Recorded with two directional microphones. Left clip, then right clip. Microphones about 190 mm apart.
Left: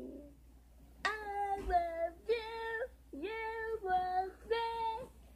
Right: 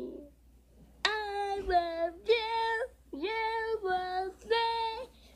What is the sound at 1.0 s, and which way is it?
Child singing, 35° right (ahead or behind).